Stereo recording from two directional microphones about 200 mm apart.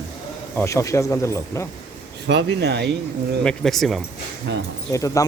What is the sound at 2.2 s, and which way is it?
Speech, 60° right (ahead or behind).